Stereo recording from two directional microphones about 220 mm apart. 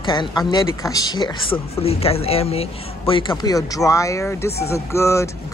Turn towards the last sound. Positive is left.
turn(degrees=15)  # may be behind; listen again after turning